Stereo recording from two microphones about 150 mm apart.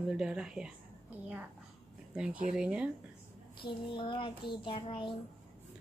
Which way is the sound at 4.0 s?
35° left (ahead or behind).